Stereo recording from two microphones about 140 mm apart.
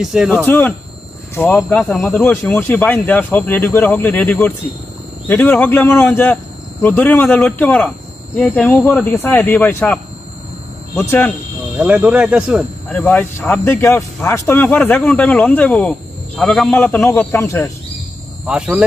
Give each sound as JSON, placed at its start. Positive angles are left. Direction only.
{"t": 0.0, "sound": "speech", "side_deg": -5}
{"t": 0.5, "sound": "speech", "side_deg": 15}
{"t": 11.0, "sound": "speech", "side_deg": 15}
{"t": 11.8, "sound": "speech", "side_deg": -10}
{"t": 12.8, "sound": "speech", "side_deg": 10}
{"t": 18.4, "sound": "speech", "side_deg": -10}